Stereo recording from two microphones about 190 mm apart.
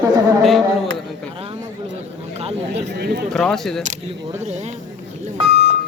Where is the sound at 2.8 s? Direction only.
60° right (ahead or behind).